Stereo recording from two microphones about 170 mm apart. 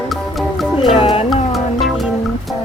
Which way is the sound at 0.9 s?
30° left (ahead or behind).